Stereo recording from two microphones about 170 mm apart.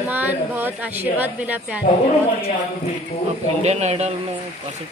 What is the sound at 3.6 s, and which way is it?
Speech, 40° right (ahead or behind).